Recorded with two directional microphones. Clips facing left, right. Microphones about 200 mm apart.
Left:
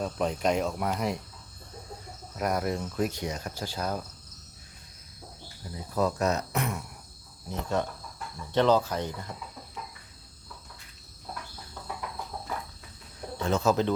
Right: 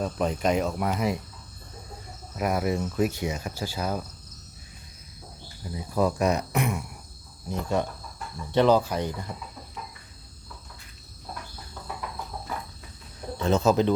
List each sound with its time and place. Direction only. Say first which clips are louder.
0.0 s speech: right 2 dB; centre (ahead or behind)
2.3 s speech: right 3 dB; 5° right (ahead or behind)
5.7 s speech: right 3 dB; 10° right (ahead or behind)
13.4 s speech: right 4 dB; 20° right (ahead or behind)